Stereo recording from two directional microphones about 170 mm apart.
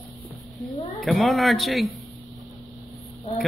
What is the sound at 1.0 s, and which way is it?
Speech, centre (ahead or behind).